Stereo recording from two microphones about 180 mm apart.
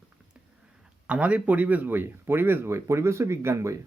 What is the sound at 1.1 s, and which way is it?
Speech, 5° right (ahead or behind).